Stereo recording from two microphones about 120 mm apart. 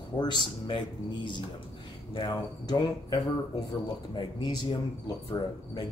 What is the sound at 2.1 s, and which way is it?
Speech, 40° left (ahead or behind).